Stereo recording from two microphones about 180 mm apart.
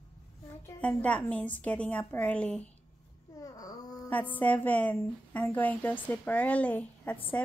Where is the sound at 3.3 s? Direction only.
20° left (ahead or behind).